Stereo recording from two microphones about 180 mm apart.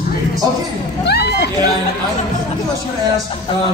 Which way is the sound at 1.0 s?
65° left (ahead or behind).